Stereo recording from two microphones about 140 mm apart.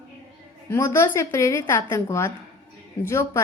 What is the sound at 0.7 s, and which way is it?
A woman's voice, 15° left (ahead or behind).